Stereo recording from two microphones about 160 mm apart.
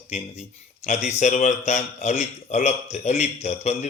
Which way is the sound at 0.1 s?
45° left (ahead or behind).